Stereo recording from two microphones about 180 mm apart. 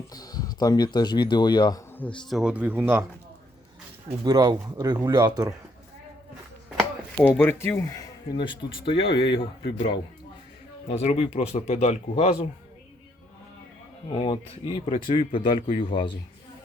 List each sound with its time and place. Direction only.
0.1 s speech: 20° left (ahead or behind)
2.0 s speech: 5° left (ahead or behind); by 3.1 s 10° right (ahead or behind)
4.2 s speech: 25° right (ahead or behind)
7.2 s speech: 10° left (ahead or behind); by 12.5 s 35° left (ahead or behind)
14.1 s speech: 30° left (ahead or behind)